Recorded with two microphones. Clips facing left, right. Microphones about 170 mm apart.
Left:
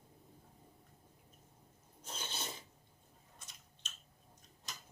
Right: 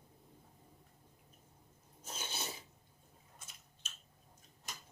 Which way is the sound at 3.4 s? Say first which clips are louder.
Even; 5° right (ahead or behind).